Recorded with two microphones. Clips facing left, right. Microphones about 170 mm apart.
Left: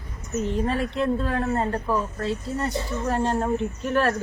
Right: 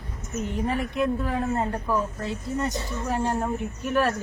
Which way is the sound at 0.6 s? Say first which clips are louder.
Right 1 dB; 15° right (ahead or behind).